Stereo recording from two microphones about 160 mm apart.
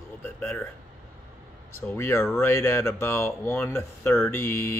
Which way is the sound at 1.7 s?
15° left (ahead or behind).